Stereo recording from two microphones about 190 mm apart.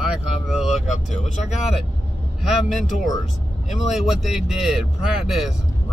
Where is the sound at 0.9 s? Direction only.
35° left (ahead or behind).